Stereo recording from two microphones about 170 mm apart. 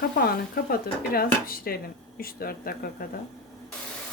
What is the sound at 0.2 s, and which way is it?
Speech, 65° left (ahead or behind).